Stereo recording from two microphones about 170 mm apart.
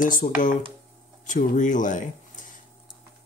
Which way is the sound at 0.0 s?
50° left (ahead or behind).